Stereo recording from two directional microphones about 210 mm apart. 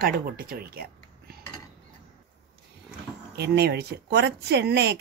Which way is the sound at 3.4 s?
50° right (ahead or behind).